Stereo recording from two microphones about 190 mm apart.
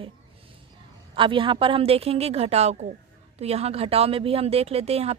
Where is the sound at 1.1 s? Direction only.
25° right (ahead or behind).